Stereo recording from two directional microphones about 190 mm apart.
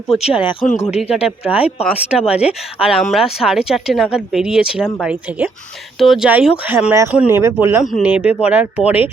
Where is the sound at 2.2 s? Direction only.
35° left (ahead or behind).